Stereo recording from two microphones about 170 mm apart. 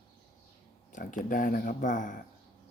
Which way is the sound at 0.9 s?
50° left (ahead or behind).